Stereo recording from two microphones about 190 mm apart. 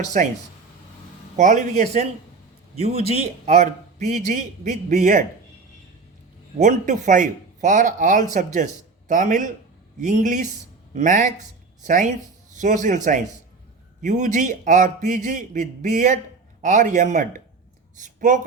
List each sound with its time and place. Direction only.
1.4 s a man's voice: 40° right (ahead or behind)
6.6 s a man's voice: 40° right (ahead or behind)
12.5 s a man's voice: 40° right (ahead or behind)